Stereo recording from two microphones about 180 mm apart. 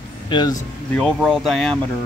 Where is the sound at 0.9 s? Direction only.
5° left (ahead or behind).